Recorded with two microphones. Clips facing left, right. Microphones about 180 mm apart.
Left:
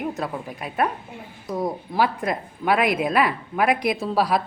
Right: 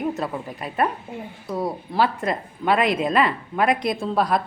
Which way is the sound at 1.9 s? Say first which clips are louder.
Right 1 dB; 15° left (ahead or behind).